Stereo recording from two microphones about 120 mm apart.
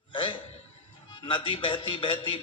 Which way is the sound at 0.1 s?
45° left (ahead or behind).